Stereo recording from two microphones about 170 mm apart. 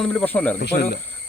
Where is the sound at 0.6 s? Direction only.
75° left (ahead or behind).